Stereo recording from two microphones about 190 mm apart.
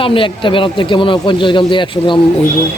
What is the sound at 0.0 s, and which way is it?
Speech, 25° left (ahead or behind).